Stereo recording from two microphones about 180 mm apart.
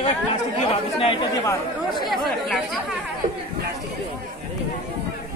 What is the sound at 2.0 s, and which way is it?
Speech, centre (ahead or behind).